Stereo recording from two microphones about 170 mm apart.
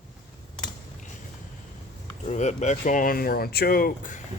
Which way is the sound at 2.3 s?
40° left (ahead or behind).